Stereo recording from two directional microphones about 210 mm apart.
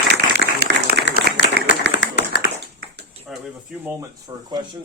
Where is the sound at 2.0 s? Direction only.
55° left (ahead or behind).